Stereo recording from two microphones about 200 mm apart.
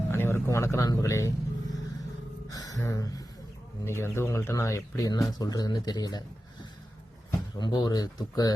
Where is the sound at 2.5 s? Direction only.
20° left (ahead or behind).